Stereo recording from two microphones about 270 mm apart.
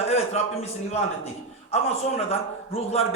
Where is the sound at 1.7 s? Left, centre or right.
Left.